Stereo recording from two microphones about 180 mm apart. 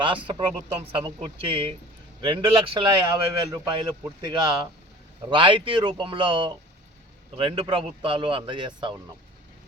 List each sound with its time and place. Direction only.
0.3 s a man's voice: 30° right (ahead or behind)